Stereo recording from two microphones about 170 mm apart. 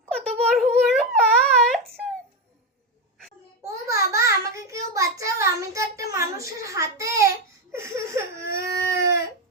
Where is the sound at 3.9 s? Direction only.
20° right (ahead or behind).